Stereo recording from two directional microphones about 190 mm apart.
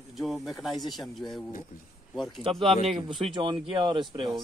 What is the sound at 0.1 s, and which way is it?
Speech, centre (ahead or behind).